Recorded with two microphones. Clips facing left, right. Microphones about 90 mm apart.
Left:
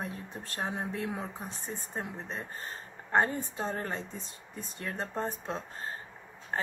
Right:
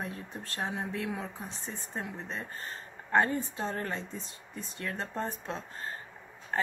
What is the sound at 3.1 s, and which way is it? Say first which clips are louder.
Speech: right 1 dB; 25° left (ahead or behind).